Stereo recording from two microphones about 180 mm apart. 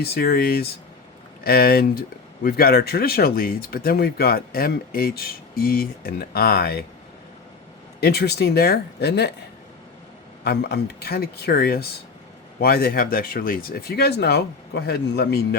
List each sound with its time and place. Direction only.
0.0 s speech: 60° left (ahead or behind)
8.0 s speech: 60° left (ahead or behind)
10.4 s speech: 65° left (ahead or behind)